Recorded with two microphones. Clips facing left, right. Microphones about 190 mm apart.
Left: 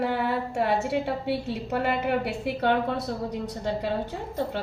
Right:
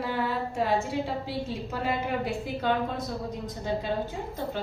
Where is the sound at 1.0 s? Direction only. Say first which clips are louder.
Left 4 dB; 70° left (ahead or behind).